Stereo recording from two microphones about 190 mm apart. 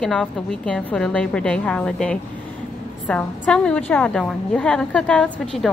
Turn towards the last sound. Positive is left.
turn(degrees=5)  # may be behind; listen again after turning